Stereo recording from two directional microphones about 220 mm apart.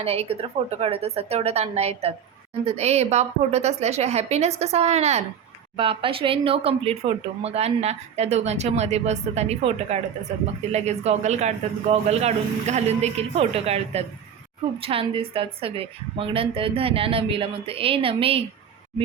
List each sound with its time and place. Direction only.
0.0 s speech: 25° right (ahead or behind)